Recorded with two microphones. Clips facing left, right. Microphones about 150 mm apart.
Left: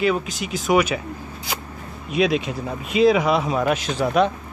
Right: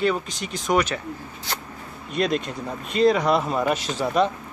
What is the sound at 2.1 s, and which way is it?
Speech, 5° left (ahead or behind).